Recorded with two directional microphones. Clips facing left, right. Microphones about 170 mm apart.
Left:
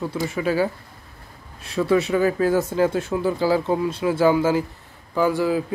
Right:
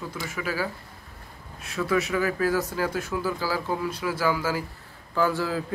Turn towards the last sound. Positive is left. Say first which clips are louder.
# left 5 dB
turn(degrees=15)  # may be behind; listen again after turning